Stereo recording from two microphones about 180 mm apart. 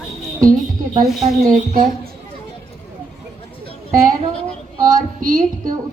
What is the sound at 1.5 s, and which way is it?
Speech, 45° right (ahead or behind).